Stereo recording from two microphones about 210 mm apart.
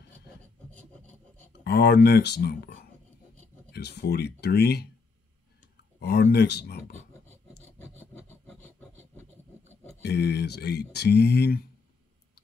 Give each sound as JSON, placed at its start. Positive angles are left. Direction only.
{"t": 1.5, "sound": "speech", "side_deg": 50}
{"t": 3.7, "sound": "speech", "side_deg": 50}
{"t": 5.9, "sound": "speech", "side_deg": 55}
{"t": 7.6, "sound": "a sound", "side_deg": 10}
{"t": 10.0, "sound": "speech", "side_deg": 55}